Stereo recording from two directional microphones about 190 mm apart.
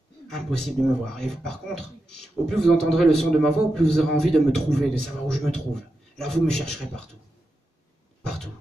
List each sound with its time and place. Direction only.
0.3 s a man's voice: 5° left (ahead or behind)